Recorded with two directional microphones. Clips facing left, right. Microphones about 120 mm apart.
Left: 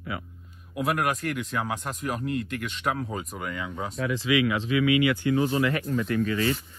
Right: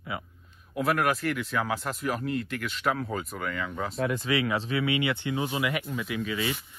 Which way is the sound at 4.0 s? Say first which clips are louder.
Left 3 dB; 45° right (ahead or behind).